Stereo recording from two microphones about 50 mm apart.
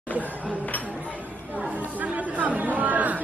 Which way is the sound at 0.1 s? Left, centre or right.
Left.